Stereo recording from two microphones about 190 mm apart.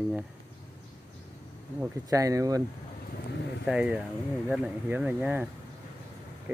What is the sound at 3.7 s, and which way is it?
Speech, 5° right (ahead or behind).